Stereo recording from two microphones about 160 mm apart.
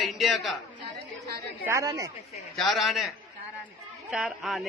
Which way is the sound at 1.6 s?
20° right (ahead or behind).